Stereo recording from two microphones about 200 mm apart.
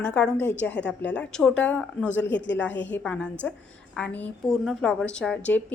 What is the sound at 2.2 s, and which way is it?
Speech, 60° left (ahead or behind).